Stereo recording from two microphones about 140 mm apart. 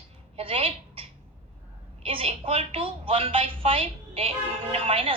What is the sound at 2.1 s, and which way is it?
A woman's voice, 40° right (ahead or behind).